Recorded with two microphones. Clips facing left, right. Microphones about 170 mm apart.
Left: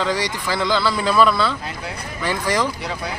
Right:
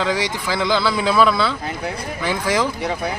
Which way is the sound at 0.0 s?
10° right (ahead or behind).